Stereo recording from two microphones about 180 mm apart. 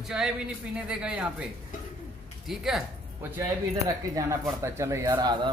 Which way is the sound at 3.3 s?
15° right (ahead or behind).